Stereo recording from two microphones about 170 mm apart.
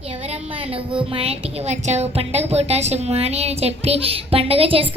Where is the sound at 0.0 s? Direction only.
35° right (ahead or behind).